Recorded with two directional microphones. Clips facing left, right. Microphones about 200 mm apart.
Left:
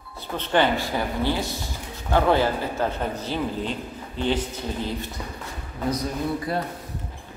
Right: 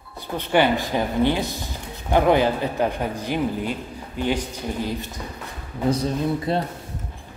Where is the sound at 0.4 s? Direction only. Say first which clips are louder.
Right 2 dB; 10° right (ahead or behind).